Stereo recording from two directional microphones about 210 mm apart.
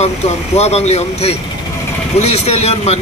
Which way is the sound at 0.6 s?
30° left (ahead or behind).